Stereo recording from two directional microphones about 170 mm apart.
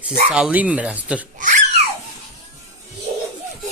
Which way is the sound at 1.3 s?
50° right (ahead or behind).